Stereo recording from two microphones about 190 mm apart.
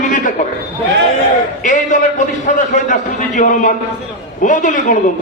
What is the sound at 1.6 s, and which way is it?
A man's voice, 40° left (ahead or behind).